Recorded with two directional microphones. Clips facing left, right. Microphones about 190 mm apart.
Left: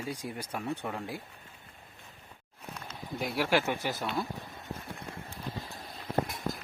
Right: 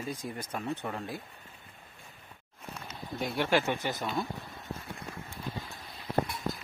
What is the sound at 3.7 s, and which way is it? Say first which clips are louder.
Speech: even; 5° left (ahead or behind).